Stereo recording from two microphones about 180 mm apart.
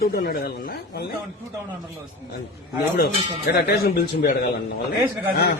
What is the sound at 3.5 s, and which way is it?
Speech, 60° left (ahead or behind).